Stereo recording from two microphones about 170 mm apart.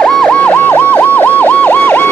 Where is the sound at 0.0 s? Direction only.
5° left (ahead or behind).